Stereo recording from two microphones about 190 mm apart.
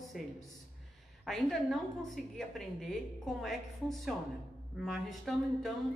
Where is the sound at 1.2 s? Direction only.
Centre (ahead or behind).